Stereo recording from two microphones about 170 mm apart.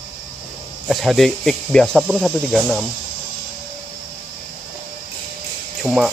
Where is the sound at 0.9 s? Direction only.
Centre (ahead or behind).